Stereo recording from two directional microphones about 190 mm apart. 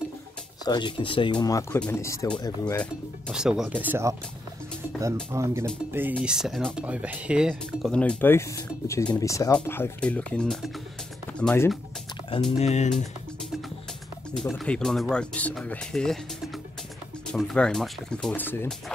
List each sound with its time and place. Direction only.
0.7 s speech: 25° left (ahead or behind)
2.8 s speech: centre (ahead or behind)
5.3 s speech: 15° right (ahead or behind)
6.1 s speech: centre (ahead or behind)
12.5 s speech: 35° left (ahead or behind)
14.3 s speech: centre (ahead or behind)
17.3 s speech: 5° left (ahead or behind)